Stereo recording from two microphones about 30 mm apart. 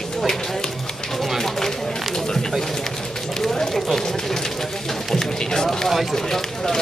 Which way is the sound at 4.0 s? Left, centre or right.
Centre.